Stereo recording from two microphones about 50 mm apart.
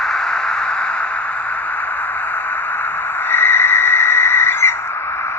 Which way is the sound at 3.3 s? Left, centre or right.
Left.